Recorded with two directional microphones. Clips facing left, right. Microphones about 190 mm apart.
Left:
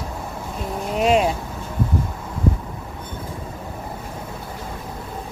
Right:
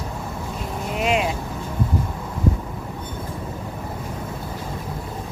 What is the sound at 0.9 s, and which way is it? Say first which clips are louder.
Vehicle: left 4 dB; 40° left (ahead or behind).